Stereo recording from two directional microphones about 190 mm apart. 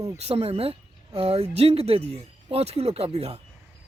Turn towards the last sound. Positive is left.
turn(degrees=-35)  # may be behind; listen again after turning